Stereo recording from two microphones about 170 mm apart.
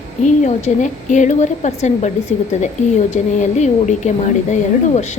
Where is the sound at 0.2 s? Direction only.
45° left (ahead or behind).